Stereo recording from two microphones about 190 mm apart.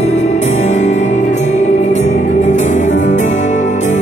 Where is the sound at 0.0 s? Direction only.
35° left (ahead or behind).